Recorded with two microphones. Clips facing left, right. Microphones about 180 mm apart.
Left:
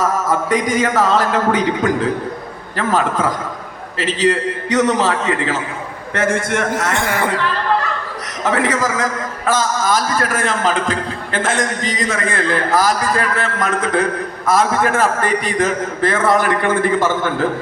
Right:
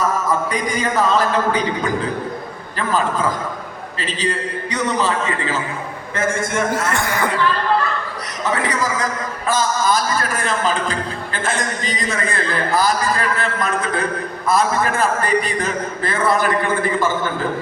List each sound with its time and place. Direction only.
0.3 s a man's voice: 90° left
6.9 s speech: 25° left (ahead or behind)
8.4 s a man's voice: 90° left